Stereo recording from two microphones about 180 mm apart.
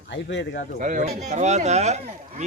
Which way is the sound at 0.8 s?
45° right (ahead or behind).